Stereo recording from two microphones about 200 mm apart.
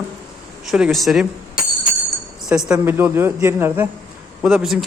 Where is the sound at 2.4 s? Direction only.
5° right (ahead or behind).